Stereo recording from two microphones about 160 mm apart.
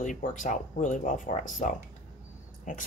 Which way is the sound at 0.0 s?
50° left (ahead or behind).